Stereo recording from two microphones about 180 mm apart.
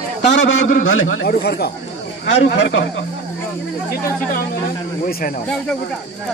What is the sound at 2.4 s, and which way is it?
Speech, 85° left.